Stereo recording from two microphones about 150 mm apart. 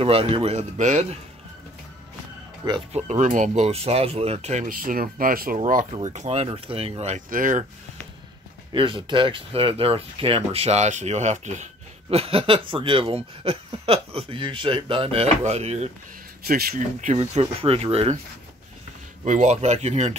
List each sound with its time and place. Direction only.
0.0 s speech: 40° right (ahead or behind)
2.9 s speech: 50° right (ahead or behind)
4.6 s speech: 70° right (ahead or behind)
6.0 s speech: 50° right (ahead or behind)
7.2 s speech: 65° right (ahead or behind)
8.7 s speech: 35° right (ahead or behind)
16.4 s speech: 80° right
17.1 s speech: 45° right (ahead or behind)
19.2 s speech: 50° right (ahead or behind)